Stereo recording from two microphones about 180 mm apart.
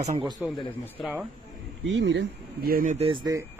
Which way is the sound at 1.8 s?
90° right.